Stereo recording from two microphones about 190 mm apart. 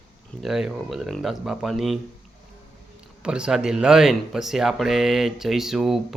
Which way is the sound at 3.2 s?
5° right (ahead or behind).